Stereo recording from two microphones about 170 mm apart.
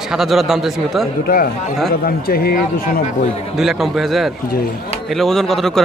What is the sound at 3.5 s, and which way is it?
Speech, 5° right (ahead or behind).